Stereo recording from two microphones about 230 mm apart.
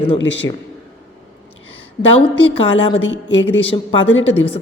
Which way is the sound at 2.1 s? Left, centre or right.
Left.